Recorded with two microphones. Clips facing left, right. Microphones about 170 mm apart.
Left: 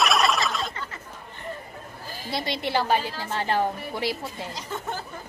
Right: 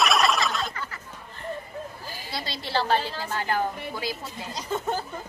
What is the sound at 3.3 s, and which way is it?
Speech, 25° left (ahead or behind).